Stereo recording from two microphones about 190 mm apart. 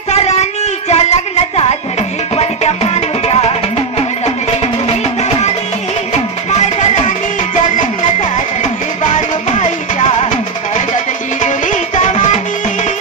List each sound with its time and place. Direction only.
0.1 s a sound: 35° left (ahead or behind)
2.3 s music: 35° left (ahead or behind)
9.0 s music: 40° left (ahead or behind)
11.4 s music: 40° left (ahead or behind)